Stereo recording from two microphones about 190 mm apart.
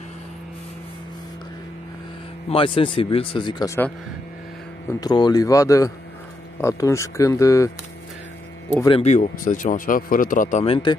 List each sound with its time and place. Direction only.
2.5 s speech: 25° left (ahead or behind)
5.0 s speech: 20° left (ahead or behind)
9.0 s speech: 40° left (ahead or behind)